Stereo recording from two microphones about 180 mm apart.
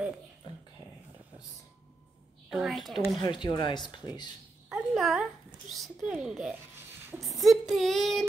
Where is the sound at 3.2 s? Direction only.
25° left (ahead or behind).